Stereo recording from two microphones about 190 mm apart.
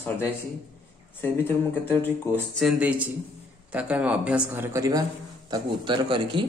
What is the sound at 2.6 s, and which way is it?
Speech, 5° right (ahead or behind).